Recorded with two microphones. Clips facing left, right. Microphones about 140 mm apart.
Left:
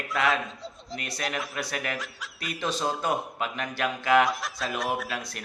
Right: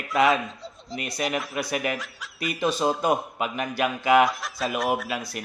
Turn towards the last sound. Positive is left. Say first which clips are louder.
# right 4 dB
turn(degrees=-5)  # may be behind; listen again after turning